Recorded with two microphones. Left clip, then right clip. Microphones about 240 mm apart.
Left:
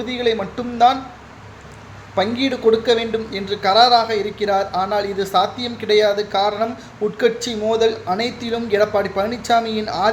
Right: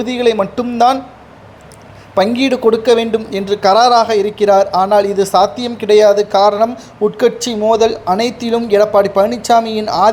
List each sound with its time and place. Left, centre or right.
0.0 s a man's voice: right
2.1 s speech: right